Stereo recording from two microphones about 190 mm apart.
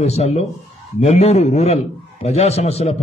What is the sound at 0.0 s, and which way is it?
A man's voice, 35° left (ahead or behind).